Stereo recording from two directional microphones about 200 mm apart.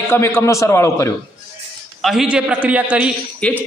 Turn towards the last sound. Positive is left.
turn(degrees=5)  # may be behind; listen again after turning